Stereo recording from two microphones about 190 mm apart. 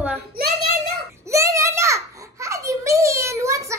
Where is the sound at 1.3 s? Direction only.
15° right (ahead or behind).